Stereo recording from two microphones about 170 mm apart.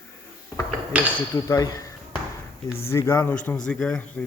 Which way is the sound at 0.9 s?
10° right (ahead or behind).